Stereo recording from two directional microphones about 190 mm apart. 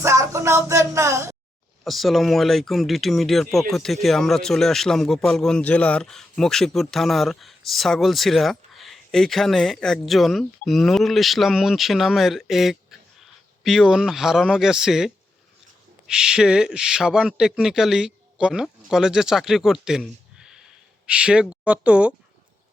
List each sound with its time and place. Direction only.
0.0 s speech: 15° right (ahead or behind)
1.8 s speech: centre (ahead or behind)